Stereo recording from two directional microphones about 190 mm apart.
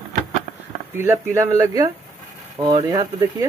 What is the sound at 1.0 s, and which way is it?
Speech, 15° right (ahead or behind).